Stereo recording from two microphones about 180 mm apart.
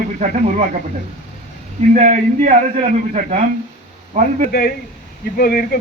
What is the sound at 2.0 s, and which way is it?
Speech, 40° right (ahead or behind).